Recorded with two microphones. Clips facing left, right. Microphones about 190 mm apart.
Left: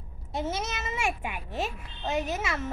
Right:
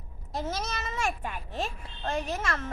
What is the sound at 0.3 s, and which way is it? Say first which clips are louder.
Speech: left 2 dB; 25° left (ahead or behind).